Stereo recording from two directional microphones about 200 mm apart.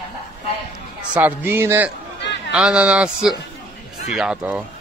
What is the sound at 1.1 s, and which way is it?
Speech, 10° right (ahead or behind).